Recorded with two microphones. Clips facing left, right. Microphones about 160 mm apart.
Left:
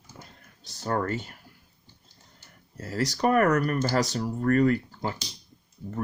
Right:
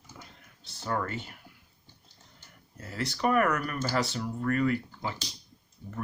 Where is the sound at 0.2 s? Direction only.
40° left (ahead or behind).